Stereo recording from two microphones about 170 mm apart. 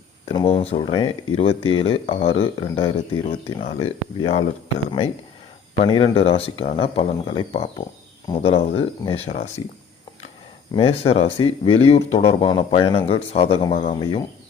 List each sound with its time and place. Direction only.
0.3 s speech: 35° left (ahead or behind)
10.7 s speech: 35° left (ahead or behind)